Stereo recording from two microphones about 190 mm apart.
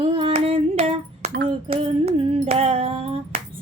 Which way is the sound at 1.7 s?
30° right (ahead or behind).